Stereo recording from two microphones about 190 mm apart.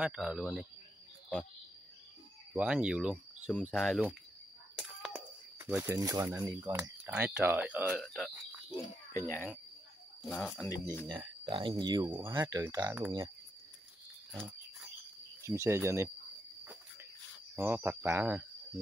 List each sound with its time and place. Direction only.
0.0 s speech: 5° right (ahead or behind)
2.5 s speech: 5° right (ahead or behind)
4.7 s a sound: centre (ahead or behind)
5.6 s speech: 10° right (ahead or behind)
9.1 s speech: 15° left (ahead or behind)
11.4 s speech: 25° right (ahead or behind)
15.4 s speech: 15° right (ahead or behind)
17.6 s speech: 10° right (ahead or behind)